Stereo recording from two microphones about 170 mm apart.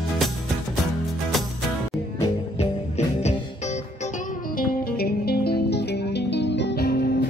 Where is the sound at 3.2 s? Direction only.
40° left (ahead or behind); by 7.2 s 70° left (ahead or behind).